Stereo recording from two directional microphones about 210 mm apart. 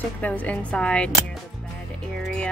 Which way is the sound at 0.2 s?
5° left (ahead or behind).